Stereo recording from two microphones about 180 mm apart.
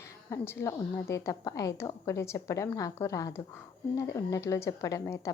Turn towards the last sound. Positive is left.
turn(degrees=15)  # may be behind; listen again after turning